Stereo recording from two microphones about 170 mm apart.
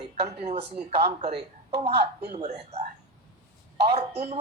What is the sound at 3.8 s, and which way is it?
Speech, 40° right (ahead or behind).